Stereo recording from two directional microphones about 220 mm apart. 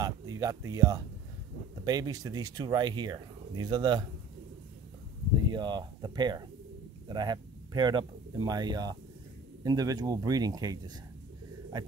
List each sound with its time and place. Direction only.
0.0 s speech: 15° right (ahead or behind)
5.5 s speech: 20° right (ahead or behind)